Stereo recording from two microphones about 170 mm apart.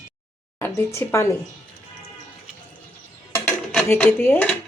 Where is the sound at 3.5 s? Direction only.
10° left (ahead or behind).